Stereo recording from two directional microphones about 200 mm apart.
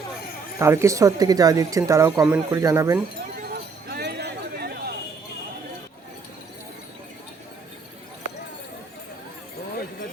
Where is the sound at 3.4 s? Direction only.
55° right (ahead or behind).